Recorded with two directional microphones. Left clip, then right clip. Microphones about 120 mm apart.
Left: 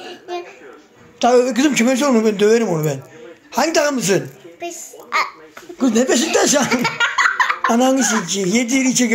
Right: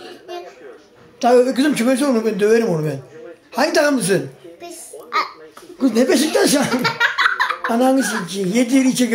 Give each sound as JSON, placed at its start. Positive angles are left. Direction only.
{"t": 1.2, "sound": "speech", "side_deg": 20}
{"t": 4.6, "sound": "a sound", "side_deg": 0}
{"t": 5.8, "sound": "speech", "side_deg": 10}
{"t": 7.7, "sound": "speech", "side_deg": 15}